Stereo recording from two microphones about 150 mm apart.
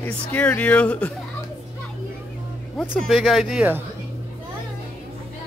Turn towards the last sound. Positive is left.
turn(degrees=0)  # may be behind; listen again after turning